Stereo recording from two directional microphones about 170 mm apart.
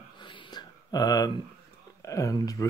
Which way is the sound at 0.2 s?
25° left (ahead or behind).